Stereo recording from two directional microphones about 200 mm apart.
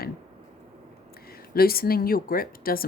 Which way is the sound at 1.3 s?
50° left (ahead or behind).